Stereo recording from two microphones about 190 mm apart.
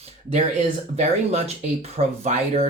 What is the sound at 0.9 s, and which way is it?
Speech, 35° right (ahead or behind).